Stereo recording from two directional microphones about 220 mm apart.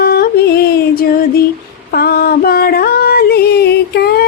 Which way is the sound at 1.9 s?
45° left (ahead or behind).